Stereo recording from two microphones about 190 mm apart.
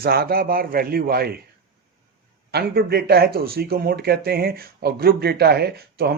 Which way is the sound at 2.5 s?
55° right (ahead or behind).